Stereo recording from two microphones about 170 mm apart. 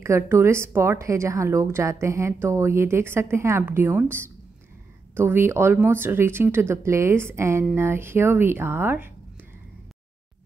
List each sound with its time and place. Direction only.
0.0 s a woman's voice: 15° right (ahead or behind)